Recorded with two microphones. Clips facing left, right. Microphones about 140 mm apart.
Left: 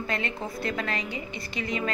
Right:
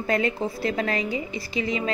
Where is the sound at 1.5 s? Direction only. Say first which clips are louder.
Right 5 dB; 40° left (ahead or behind).